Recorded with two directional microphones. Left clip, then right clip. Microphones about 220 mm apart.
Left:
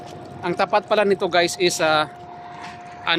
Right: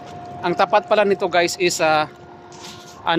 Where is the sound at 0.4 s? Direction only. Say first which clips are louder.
Right 3 dB; 5° right (ahead or behind).